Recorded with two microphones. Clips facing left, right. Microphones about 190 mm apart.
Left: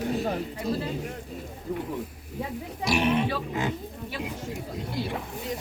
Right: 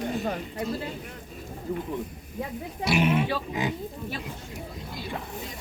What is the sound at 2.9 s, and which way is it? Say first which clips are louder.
Speech: even; 5° right (ahead or behind).